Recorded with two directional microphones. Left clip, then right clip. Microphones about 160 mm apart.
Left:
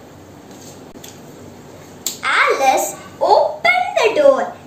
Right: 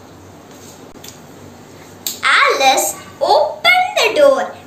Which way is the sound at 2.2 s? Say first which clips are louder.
Right 3 dB; 25° left (ahead or behind).